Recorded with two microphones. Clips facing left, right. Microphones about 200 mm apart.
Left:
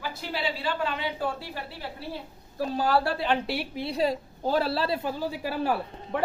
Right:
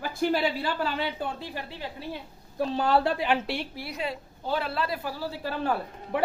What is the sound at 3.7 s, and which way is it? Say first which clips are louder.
Speech: left 6 dB; 25° left (ahead or behind).